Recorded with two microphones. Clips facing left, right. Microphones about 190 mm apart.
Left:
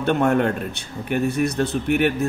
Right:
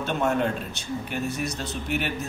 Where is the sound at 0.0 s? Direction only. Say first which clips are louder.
Left 6 dB; 60° left (ahead or behind).